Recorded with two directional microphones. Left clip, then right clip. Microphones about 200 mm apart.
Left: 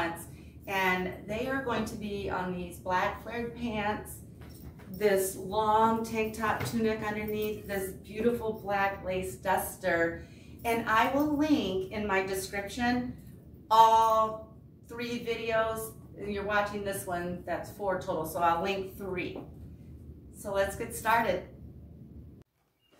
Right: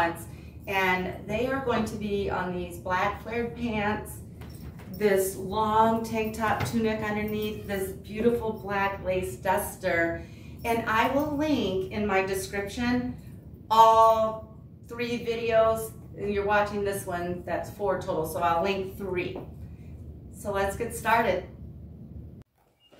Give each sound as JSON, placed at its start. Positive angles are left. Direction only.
{"t": 0.7, "sound": "a woman's voice", "side_deg": 0}
{"t": 4.9, "sound": "a woman's voice", "side_deg": 0}
{"t": 20.5, "sound": "a woman's voice", "side_deg": 0}